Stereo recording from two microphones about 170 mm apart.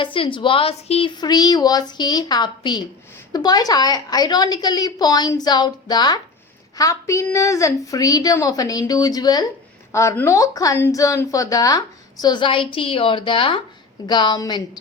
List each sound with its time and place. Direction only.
0.0 s a woman's voice: 30° left (ahead or behind)